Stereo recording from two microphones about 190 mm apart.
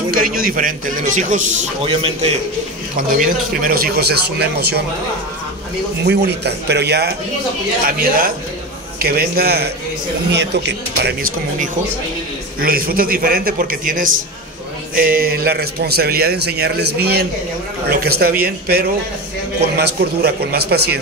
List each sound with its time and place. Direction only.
0.1 s a man's voice: 50° right (ahead or behind); by 2.3 s 35° right (ahead or behind)
3.2 s a man's voice: 50° right (ahead or behind)
6.0 s a man's voice: 60° right (ahead or behind)
9.0 s a man's voice: 55° right (ahead or behind)
12.5 s a man's voice: 50° right (ahead or behind)